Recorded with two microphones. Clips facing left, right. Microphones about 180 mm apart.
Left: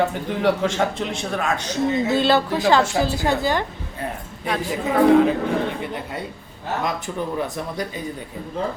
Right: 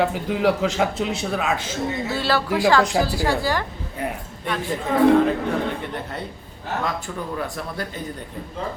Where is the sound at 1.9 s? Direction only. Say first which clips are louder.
Left 5 dB; 20° left (ahead or behind).